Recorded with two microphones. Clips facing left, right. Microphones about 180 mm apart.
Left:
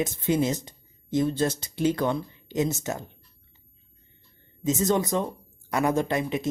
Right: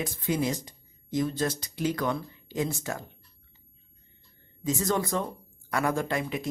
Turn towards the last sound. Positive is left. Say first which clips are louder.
# left 4 dB
turn(degrees=20)  # may be behind; listen again after turning